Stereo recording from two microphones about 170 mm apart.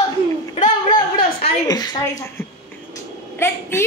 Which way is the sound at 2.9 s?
15° left (ahead or behind).